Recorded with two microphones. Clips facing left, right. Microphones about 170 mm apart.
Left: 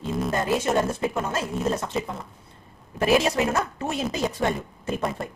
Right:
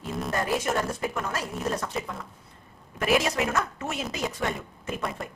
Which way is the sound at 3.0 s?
30° left (ahead or behind).